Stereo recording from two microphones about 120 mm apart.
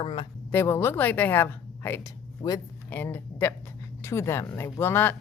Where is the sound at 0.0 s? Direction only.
45° left (ahead or behind).